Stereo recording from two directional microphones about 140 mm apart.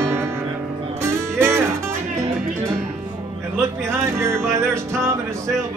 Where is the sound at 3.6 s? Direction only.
20° right (ahead or behind).